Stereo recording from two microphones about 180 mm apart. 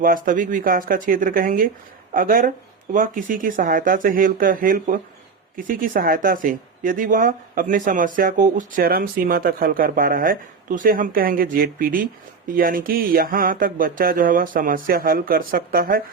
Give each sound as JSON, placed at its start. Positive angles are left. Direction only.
{"t": 0.0, "sound": "speech", "side_deg": -50}